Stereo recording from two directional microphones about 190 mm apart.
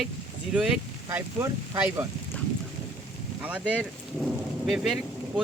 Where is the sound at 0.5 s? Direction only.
5° right (ahead or behind).